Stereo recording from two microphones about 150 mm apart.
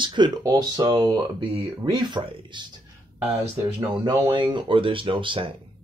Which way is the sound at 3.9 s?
35° right (ahead or behind).